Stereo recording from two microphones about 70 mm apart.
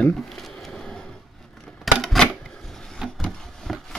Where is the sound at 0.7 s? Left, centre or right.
Centre.